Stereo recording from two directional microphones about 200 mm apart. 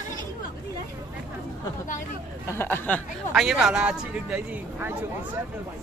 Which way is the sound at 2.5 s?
10° left (ahead or behind).